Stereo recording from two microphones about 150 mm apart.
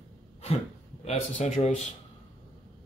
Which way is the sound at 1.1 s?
55° left (ahead or behind).